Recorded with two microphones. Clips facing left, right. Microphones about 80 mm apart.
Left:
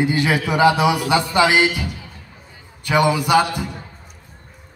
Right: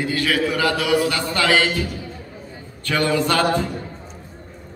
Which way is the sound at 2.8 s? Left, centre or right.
Centre.